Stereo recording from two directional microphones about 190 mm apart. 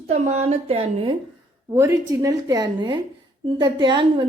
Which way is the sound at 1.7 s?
15° right (ahead or behind).